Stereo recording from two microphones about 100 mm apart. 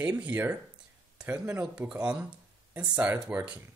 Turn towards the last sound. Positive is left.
turn(degrees=-10)  # may be behind; listen again after turning